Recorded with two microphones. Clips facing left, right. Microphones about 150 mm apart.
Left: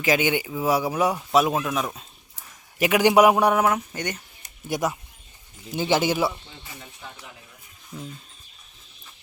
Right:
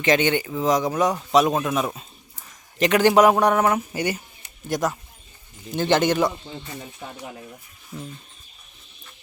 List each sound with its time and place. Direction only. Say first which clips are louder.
0.0 s speech: right 2 dB; 5° left (ahead or behind)
3.8 s speech: right 5 dB; 10° right (ahead or behind)
4.7 s speech: right 1 dB; 10° left (ahead or behind)
7.0 s speech: right 2 dB; 45° right (ahead or behind)
7.9 s speech: right 2 dB; 5° right (ahead or behind)